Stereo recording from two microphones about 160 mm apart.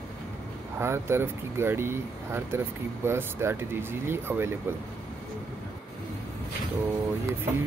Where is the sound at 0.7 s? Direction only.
15° right (ahead or behind).